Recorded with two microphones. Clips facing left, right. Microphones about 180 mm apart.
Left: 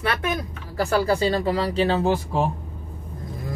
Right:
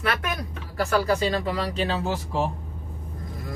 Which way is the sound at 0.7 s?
30° left (ahead or behind).